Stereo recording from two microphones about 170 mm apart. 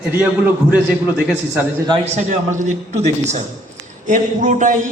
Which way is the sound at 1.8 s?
35° right (ahead or behind).